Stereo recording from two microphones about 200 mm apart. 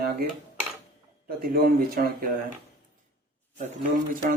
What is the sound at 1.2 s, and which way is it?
Speech, 45° right (ahead or behind).